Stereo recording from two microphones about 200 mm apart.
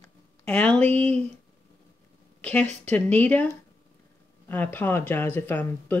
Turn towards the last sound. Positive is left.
turn(degrees=10)  # may be behind; listen again after turning